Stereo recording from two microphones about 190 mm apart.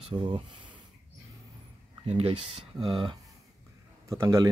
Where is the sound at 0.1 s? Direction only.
25° right (ahead or behind).